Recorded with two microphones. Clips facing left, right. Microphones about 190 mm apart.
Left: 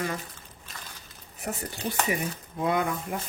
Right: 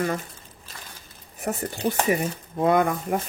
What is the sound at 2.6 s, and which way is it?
Speech, 50° right (ahead or behind).